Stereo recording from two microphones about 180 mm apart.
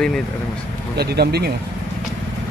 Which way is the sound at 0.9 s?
65° right (ahead or behind).